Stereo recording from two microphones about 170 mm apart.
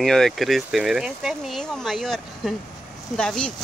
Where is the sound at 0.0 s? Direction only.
5° left (ahead or behind).